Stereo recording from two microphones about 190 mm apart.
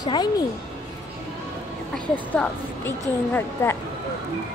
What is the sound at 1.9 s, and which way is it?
A woman's voice, 10° left (ahead or behind).